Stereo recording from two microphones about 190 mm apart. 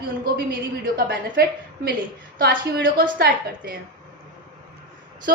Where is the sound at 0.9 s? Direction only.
55° right (ahead or behind).